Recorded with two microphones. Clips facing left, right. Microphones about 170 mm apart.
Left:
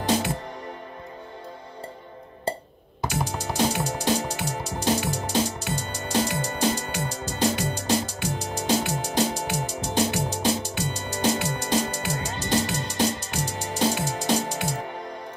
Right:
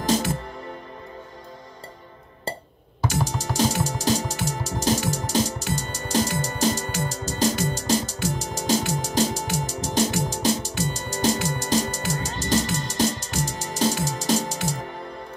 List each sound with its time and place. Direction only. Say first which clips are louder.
0.0 s music: right 1 dB; 40° right (ahead or behind)
3.3 s music: left 1 dB; 40° right (ahead or behind)